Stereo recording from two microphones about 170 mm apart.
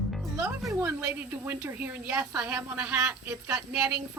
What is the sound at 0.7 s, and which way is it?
A woman's voice, 15° right (ahead or behind).